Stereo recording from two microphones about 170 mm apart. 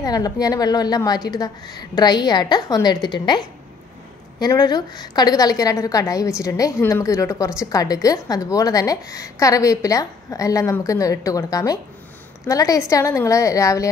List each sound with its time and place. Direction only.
0.0 s a woman's voice: 20° left (ahead or behind)